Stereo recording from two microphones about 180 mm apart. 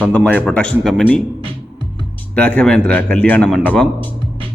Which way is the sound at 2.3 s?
5° left (ahead or behind).